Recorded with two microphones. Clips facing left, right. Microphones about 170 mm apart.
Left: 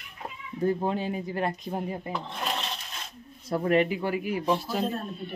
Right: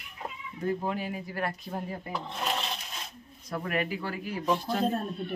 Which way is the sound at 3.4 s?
30° left (ahead or behind).